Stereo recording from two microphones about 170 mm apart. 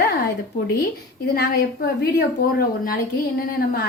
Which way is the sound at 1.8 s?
65° left (ahead or behind).